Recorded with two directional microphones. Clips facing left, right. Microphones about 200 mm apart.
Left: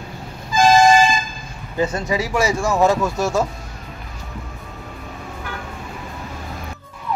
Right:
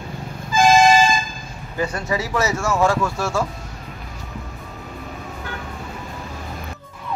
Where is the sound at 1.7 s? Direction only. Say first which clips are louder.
Left 3 dB; 20° left (ahead or behind).